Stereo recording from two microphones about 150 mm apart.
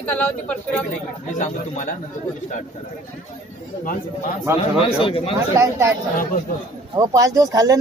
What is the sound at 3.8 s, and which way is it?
Speech, 65° left (ahead or behind).